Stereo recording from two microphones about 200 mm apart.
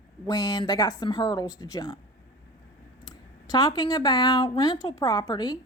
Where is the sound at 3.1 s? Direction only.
20° left (ahead or behind).